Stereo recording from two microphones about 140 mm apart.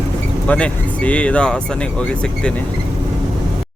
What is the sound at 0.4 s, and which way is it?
Speech, 10° left (ahead or behind).